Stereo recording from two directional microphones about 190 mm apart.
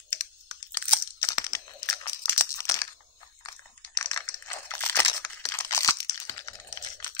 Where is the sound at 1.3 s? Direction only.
20° left (ahead or behind).